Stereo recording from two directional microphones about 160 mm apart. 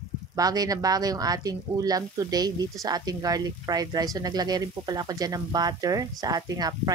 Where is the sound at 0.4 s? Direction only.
25° right (ahead or behind).